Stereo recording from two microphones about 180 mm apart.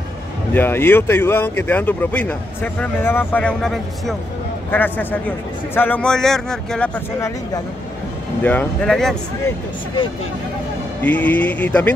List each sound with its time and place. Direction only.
0.5 s a man's voice: 10° left (ahead or behind)
7.2 s speech: 15° left (ahead or behind)
11.0 s speech: 10° left (ahead or behind)